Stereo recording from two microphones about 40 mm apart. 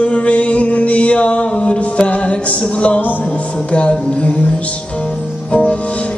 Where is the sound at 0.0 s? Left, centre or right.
Left.